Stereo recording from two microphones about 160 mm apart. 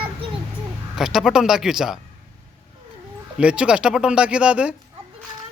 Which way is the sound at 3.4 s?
5° right (ahead or behind).